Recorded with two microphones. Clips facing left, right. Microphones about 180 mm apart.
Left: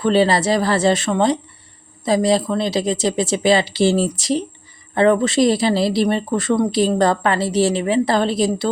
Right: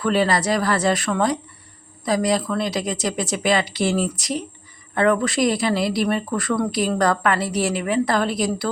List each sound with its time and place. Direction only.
0.0 s speech: 30° left (ahead or behind)